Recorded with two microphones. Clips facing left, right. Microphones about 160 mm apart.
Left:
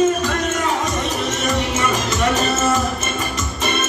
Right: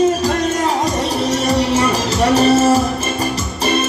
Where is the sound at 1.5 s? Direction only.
35° right (ahead or behind).